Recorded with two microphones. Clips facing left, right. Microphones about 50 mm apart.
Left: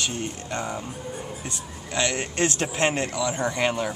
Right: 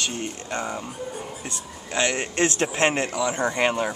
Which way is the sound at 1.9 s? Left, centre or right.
Centre.